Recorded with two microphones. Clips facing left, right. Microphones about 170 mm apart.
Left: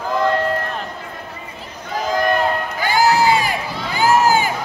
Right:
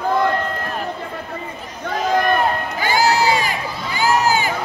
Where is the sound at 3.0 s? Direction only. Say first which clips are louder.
Left 2 dB; 50° left (ahead or behind).